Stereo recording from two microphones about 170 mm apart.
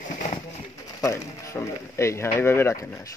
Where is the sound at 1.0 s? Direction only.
20° left (ahead or behind).